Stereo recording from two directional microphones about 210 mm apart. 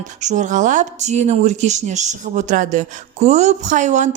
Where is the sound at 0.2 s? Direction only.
35° right (ahead or behind).